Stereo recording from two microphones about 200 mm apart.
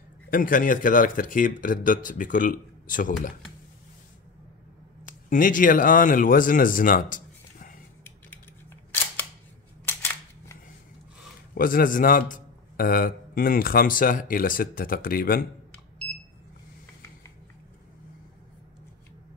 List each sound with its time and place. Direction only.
0.3 s a man's voice: 45° left (ahead or behind)
5.0 s speech: 40° left (ahead or behind)
8.0 s camera: 10° left (ahead or behind)
11.5 s a man's voice: 45° left (ahead or behind)